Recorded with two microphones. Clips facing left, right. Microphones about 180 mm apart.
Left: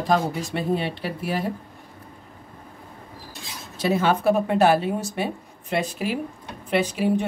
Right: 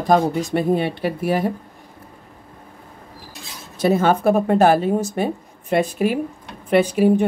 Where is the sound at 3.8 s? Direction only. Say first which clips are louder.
Right 4 dB; 45° right (ahead or behind).